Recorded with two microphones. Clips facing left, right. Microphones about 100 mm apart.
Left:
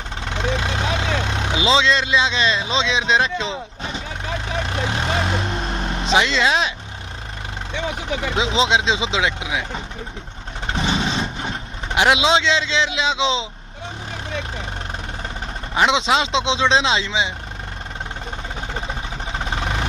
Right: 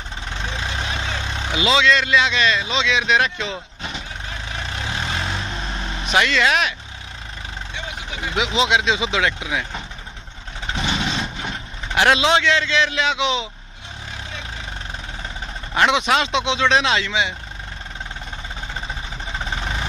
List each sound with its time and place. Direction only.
0.4 s vehicle: 65° left (ahead or behind)
1.5 s speech: 25° left (ahead or behind)
4.6 s vehicle: 50° left (ahead or behind)
6.0 s speech: 25° left (ahead or behind)
8.4 s speech: 25° left (ahead or behind)
10.9 s vehicle: 30° left (ahead or behind)
15.7 s speech: 20° left (ahead or behind)
19.5 s vehicle: 55° left (ahead or behind)